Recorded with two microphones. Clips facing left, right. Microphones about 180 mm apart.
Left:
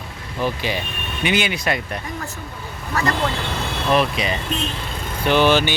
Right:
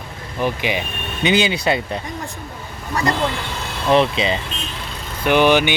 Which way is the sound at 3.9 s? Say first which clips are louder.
Right 4 dB; 25° right (ahead or behind).